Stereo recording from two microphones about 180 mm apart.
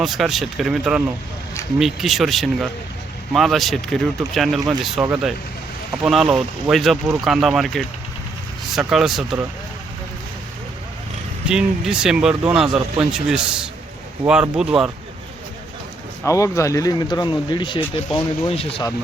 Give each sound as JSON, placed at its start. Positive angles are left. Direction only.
{"t": 0.0, "sound": "speech", "side_deg": 0}
{"t": 11.4, "sound": "speech", "side_deg": -5}
{"t": 16.2, "sound": "speech", "side_deg": 15}